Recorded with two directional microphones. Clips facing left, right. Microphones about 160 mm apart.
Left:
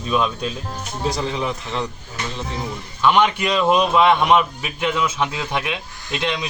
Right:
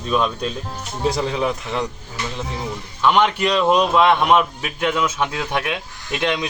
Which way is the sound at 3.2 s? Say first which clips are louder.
Right 1 dB; 10° left (ahead or behind).